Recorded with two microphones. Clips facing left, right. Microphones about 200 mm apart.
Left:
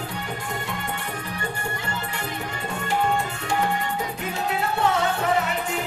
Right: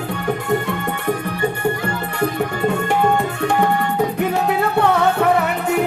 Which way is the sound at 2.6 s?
60° right (ahead or behind).